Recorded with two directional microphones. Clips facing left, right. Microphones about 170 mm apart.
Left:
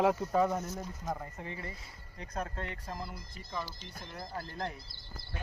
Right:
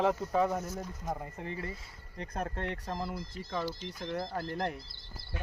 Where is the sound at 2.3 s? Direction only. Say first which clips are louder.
Right 2 dB; 60° right (ahead or behind).